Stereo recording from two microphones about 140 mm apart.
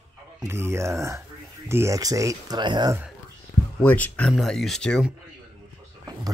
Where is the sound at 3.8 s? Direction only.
10° left (ahead or behind).